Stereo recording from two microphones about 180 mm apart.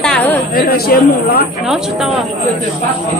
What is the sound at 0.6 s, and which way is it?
Speech, 55° left (ahead or behind).